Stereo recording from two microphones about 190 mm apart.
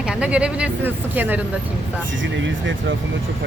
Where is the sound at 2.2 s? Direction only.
75° right (ahead or behind).